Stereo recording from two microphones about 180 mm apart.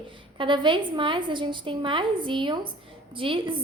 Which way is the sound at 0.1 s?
25° right (ahead or behind).